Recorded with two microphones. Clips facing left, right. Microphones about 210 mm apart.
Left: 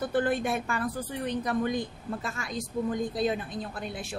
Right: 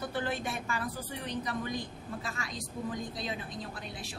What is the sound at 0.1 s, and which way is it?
A woman's voice, 55° left (ahead or behind).